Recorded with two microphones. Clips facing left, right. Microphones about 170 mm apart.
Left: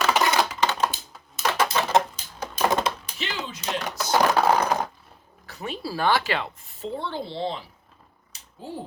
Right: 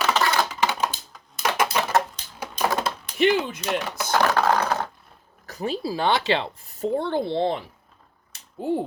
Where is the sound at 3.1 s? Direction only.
55° right (ahead or behind).